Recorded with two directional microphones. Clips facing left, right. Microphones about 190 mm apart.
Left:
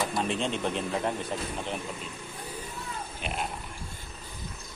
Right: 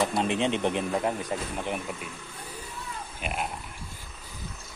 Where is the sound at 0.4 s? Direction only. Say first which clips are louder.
Right 4 dB; 20° right (ahead or behind).